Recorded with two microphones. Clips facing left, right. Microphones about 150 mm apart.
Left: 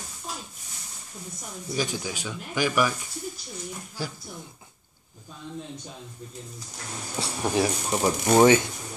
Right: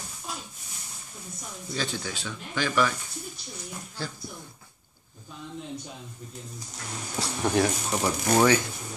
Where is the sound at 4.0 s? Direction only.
10° left (ahead or behind).